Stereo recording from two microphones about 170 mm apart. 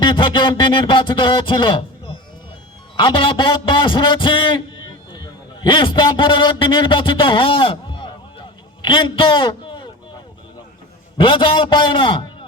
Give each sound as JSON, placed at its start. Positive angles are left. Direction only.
{"t": 0.0, "sound": "speech", "side_deg": 30}
{"t": 5.6, "sound": "a man's voice", "side_deg": 30}
{"t": 11.2, "sound": "speech", "side_deg": 30}